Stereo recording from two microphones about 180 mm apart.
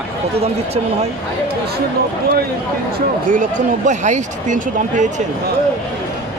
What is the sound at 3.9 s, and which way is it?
Speech, 40° right (ahead or behind).